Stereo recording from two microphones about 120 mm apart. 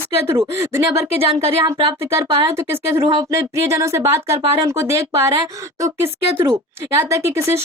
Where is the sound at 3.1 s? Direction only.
35° right (ahead or behind).